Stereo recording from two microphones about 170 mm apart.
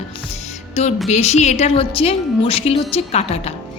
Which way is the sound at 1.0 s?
40° left (ahead or behind).